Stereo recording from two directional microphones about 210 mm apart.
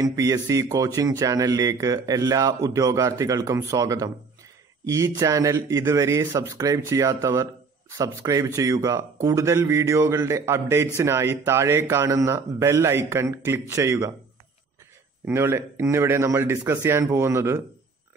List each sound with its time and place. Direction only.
0.0 s speech: 15° right (ahead or behind)
15.2 s speech: 10° right (ahead or behind)